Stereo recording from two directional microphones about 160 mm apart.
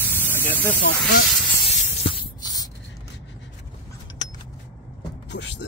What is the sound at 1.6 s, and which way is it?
Spray, 35° left (ahead or behind).